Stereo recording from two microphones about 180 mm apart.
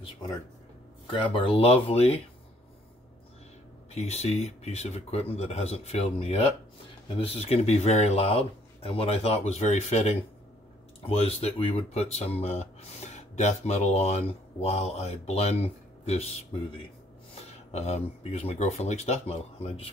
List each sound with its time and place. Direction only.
1.1 s speech: 30° left (ahead or behind)
3.9 s speech: 35° left (ahead or behind)